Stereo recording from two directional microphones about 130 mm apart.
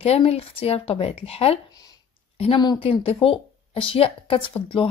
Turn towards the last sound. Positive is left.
turn(degrees=45)  # may be behind; listen again after turning